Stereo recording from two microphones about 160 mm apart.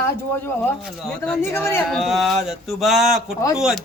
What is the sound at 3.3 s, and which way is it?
Speech, 20° left (ahead or behind).